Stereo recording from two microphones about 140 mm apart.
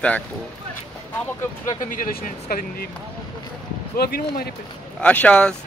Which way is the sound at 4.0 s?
90° left.